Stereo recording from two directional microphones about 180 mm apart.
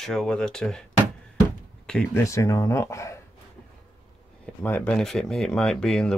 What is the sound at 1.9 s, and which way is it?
Speech, 5° left (ahead or behind).